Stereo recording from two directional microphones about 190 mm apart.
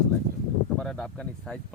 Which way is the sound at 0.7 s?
5° left (ahead or behind).